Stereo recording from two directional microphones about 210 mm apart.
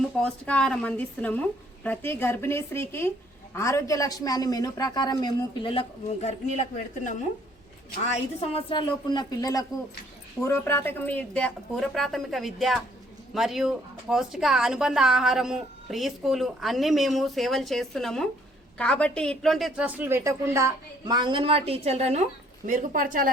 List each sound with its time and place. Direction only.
0.0 s a woman's voice: 5° left (ahead or behind); by 23.3 s 40° right (ahead or behind)